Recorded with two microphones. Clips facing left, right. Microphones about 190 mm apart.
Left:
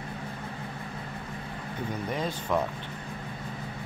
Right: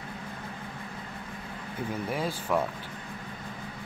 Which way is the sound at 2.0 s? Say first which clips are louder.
Even; 10° right (ahead or behind).